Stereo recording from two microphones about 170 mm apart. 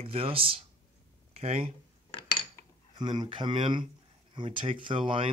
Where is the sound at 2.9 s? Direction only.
25° right (ahead or behind).